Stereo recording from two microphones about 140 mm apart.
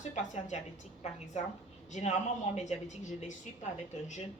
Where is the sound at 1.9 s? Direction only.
55° left (ahead or behind).